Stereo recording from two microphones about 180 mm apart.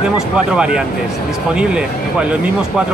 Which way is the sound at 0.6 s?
5° right (ahead or behind).